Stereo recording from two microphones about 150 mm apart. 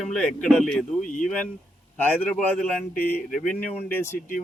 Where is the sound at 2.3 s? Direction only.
5° left (ahead or behind).